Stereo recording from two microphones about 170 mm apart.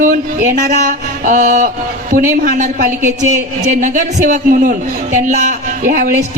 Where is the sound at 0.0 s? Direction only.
45° right (ahead or behind).